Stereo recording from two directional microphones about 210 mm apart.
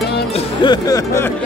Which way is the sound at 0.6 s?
15° left (ahead or behind).